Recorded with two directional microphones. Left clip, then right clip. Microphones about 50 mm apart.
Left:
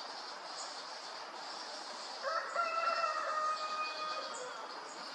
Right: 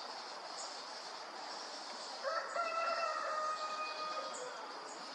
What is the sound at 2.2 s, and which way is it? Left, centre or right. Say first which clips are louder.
Fowl: left 2 dB; left.